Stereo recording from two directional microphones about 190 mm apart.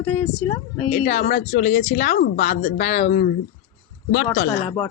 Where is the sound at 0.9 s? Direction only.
40° left (ahead or behind).